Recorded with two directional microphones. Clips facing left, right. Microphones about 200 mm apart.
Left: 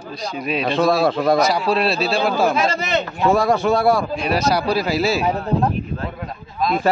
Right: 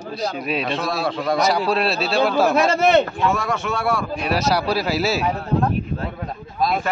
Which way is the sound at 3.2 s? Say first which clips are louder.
Left 6 dB; 35° left (ahead or behind).